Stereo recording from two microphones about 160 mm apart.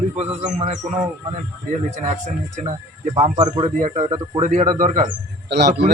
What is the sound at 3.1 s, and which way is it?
A man's voice, 40° right (ahead or behind).